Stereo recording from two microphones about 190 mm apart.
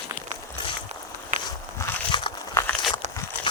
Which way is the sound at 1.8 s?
20° left (ahead or behind).